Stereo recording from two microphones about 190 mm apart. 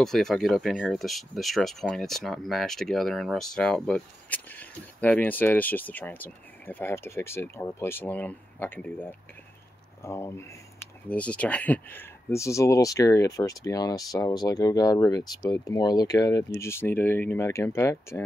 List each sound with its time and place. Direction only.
0.0 s speech: centre (ahead or behind)